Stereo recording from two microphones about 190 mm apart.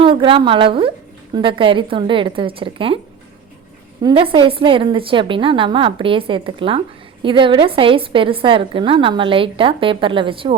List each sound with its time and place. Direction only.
0.0 s a woman's voice: 25° right (ahead or behind)
4.0 s a woman's voice: 30° right (ahead or behind)